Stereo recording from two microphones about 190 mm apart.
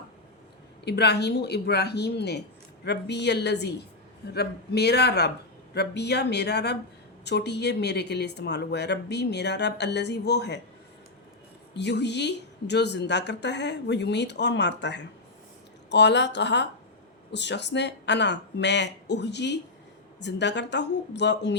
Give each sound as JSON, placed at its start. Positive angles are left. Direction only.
{"t": 0.9, "sound": "speech", "side_deg": 60}
{"t": 11.7, "sound": "speech", "side_deg": 65}